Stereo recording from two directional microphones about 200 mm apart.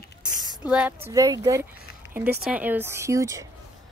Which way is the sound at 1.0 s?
15° right (ahead or behind).